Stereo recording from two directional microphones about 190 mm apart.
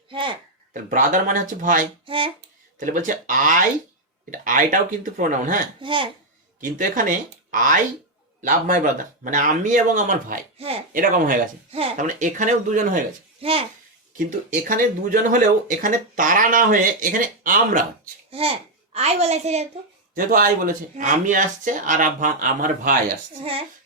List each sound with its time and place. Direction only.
0.1 s speech: 25° right (ahead or behind)
0.7 s speech: 45° right (ahead or behind)
2.0 s a child's voice: 25° right (ahead or behind)
2.7 s speech: 45° right (ahead or behind)
5.8 s a child's voice: 25° right (ahead or behind)
6.6 s speech: 45° right (ahead or behind)
11.7 s speech: 30° right (ahead or behind)
13.4 s a child's voice: 30° right (ahead or behind)
14.2 s speech: 45° right (ahead or behind)
18.3 s a child's voice: 30° right (ahead or behind)
20.1 s speech: 45° right (ahead or behind)
23.4 s a child's voice: 30° right (ahead or behind)